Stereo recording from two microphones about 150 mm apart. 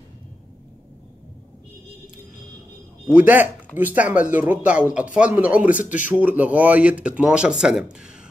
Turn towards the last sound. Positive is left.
turn(degrees=-5)  # may be behind; listen again after turning